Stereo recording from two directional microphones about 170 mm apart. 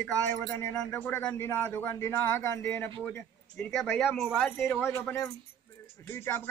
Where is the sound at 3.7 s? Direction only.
Centre (ahead or behind).